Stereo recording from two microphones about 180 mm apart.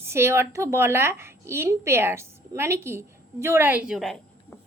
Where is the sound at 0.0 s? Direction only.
15° right (ahead or behind).